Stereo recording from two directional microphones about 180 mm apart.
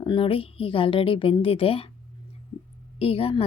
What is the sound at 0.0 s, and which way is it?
A woman's voice, 30° left (ahead or behind).